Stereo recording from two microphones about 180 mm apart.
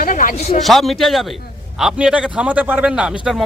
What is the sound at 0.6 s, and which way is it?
A man's voice, centre (ahead or behind).